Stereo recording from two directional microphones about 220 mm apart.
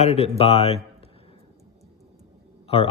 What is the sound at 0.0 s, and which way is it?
Speech, 30° left (ahead or behind).